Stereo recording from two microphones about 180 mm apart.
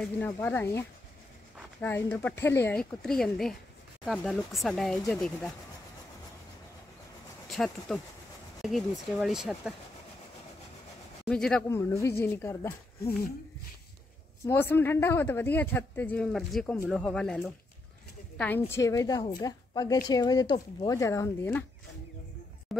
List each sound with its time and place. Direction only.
0.2 s speech: 10° left (ahead or behind)
7.4 s speech: centre (ahead or behind)
9.1 s speech: centre (ahead or behind)
11.2 s speech: 5° left (ahead or behind)
11.7 s speech: 15° left (ahead or behind)
14.4 s a woman's voice: 15° left (ahead or behind)
22.7 s a sound: centre (ahead or behind)